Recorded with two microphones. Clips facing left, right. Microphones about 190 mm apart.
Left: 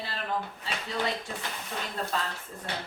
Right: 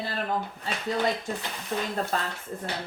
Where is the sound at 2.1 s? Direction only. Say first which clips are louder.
Right 1 dB; 45° right (ahead or behind).